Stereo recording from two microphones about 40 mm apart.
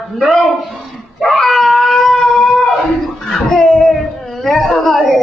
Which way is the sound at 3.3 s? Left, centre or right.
Centre.